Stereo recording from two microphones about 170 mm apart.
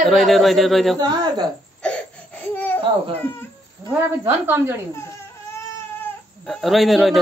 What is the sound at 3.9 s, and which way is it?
Speech, 15° right (ahead or behind).